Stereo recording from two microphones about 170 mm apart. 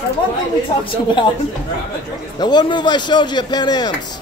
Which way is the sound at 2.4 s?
25° left (ahead or behind).